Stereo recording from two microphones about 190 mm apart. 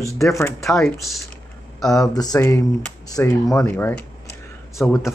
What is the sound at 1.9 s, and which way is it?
Speech, 20° left (ahead or behind).